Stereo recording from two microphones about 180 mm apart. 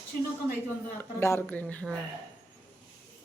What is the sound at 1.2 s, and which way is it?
Speech, 15° left (ahead or behind).